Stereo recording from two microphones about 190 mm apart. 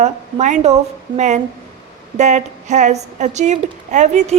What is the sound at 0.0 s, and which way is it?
A woman's voice, 40° right (ahead or behind).